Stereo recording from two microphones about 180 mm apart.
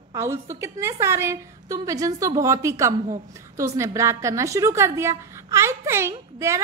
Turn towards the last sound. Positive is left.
turn(degrees=-15)  # may be behind; listen again after turning